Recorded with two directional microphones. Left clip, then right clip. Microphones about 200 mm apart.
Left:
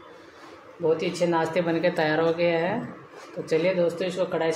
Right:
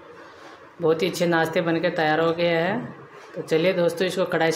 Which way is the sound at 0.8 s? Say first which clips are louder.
Right 2 dB; 25° right (ahead or behind).